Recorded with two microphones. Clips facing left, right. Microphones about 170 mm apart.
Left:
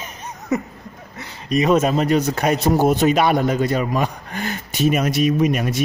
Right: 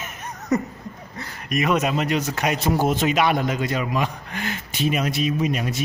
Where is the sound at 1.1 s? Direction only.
20° left (ahead or behind).